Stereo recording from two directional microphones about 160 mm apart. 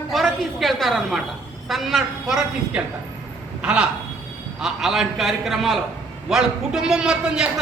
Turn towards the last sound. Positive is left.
turn(degrees=-5)  # may be behind; listen again after turning